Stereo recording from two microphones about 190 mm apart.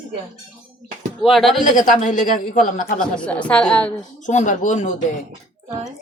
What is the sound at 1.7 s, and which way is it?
Speech, 40° left (ahead or behind).